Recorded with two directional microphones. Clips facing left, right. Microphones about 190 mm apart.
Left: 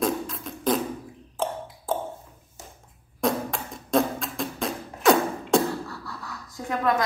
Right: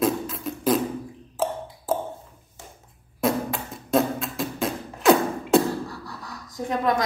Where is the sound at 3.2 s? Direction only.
5° right (ahead or behind).